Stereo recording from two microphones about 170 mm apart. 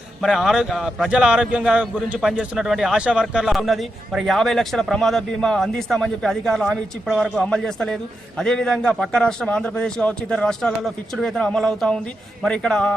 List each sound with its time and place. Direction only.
0.2 s a man's voice: centre (ahead or behind)